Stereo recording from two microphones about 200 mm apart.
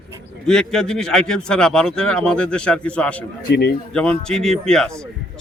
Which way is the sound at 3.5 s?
50° left (ahead or behind).